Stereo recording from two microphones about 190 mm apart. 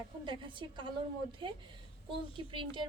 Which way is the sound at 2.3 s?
25° right (ahead or behind).